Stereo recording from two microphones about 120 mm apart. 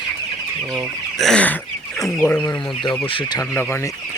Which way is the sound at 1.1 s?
5° left (ahead or behind).